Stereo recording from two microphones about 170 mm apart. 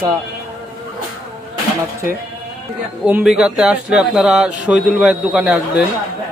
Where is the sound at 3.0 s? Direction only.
5° right (ahead or behind).